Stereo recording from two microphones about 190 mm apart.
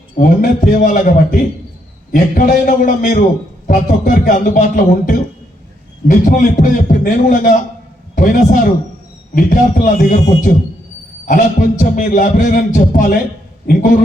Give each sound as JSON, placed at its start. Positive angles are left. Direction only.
{"t": 0.2, "sound": "a man's voice", "side_deg": 45}